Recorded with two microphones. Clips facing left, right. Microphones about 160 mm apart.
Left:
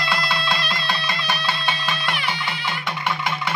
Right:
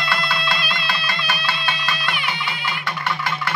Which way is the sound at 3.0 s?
15° left (ahead or behind).